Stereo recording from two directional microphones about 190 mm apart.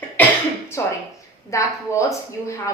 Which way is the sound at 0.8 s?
15° left (ahead or behind).